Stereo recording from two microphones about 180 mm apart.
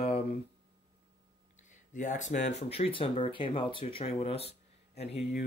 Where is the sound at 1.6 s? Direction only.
45° left (ahead or behind).